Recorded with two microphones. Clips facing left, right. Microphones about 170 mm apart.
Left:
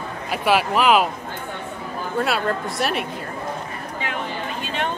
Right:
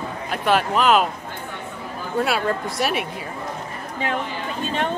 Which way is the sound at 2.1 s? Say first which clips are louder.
Right 1 dB; centre (ahead or behind).